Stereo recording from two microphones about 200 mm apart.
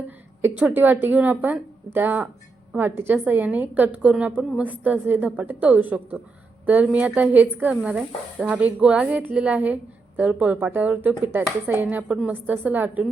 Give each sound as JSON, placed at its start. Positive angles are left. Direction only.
{"t": 0.4, "sound": "a woman's voice", "side_deg": -10}